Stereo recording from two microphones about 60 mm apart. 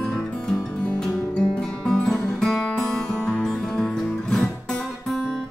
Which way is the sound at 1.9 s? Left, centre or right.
Centre.